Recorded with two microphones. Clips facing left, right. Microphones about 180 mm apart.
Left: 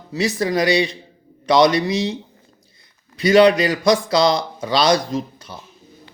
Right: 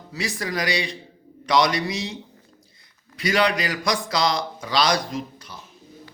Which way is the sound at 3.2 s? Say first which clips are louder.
Left 9 dB; 25° left (ahead or behind).